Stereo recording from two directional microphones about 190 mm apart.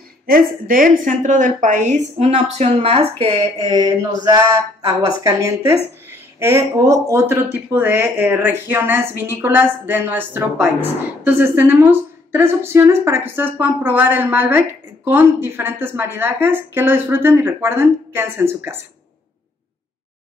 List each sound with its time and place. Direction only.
0.3 s a woman's voice: 45° right (ahead or behind); by 18.8 s 15° right (ahead or behind)